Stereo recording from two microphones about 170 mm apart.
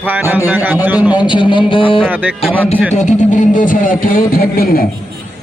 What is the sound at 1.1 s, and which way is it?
Speech, 25° left (ahead or behind).